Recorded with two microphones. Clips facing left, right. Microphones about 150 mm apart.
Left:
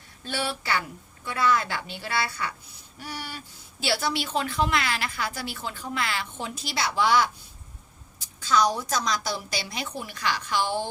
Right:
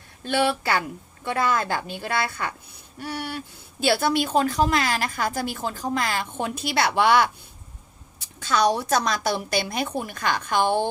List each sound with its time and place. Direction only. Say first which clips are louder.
0.3 s a woman's voice: right 7 dB; 55° right (ahead or behind)